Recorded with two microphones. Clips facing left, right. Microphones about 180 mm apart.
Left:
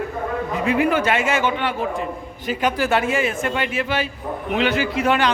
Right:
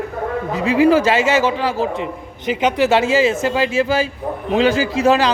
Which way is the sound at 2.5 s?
20° right (ahead or behind).